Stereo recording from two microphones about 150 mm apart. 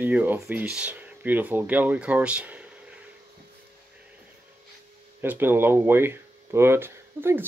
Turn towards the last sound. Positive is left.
turn(degrees=-15)  # may be behind; listen again after turning